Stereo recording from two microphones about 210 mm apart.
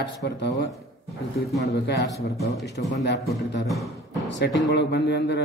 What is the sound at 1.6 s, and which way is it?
A man's voice, 50° left (ahead or behind).